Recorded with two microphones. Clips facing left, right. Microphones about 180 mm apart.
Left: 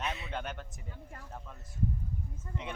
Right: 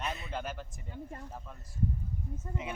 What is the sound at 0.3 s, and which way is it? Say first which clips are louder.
Speech: right 1 dB; centre (ahead or behind).